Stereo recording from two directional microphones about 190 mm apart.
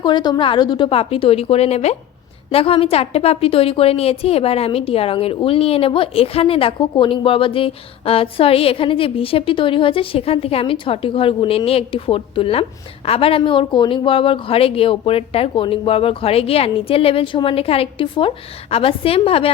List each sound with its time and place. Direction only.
0.0 s a woman's voice: 25° left (ahead or behind)